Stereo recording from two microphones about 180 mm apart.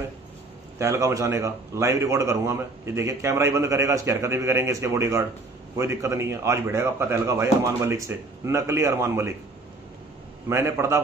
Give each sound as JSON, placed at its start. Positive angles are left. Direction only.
{"t": 0.7, "sound": "a man's voice", "side_deg": -15}
{"t": 10.5, "sound": "a man's voice", "side_deg": -15}